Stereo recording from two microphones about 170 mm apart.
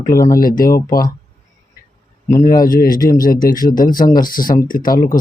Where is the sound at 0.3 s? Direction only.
55° left (ahead or behind).